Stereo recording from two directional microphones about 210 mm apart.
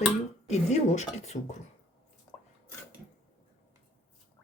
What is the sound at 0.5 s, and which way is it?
A woman's voice, 30° left (ahead or behind).